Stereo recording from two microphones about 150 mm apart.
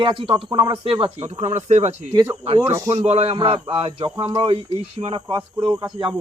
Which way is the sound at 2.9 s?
45° right (ahead or behind).